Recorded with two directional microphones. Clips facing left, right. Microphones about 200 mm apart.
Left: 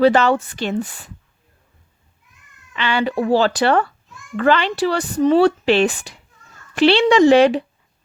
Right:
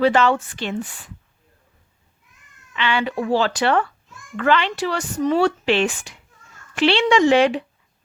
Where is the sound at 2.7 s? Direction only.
40° left (ahead or behind).